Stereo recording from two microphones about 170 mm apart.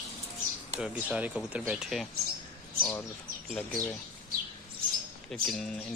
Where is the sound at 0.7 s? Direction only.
5° right (ahead or behind).